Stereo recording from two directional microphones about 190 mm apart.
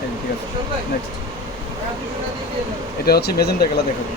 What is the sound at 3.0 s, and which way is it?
Speech, 55° left (ahead or behind).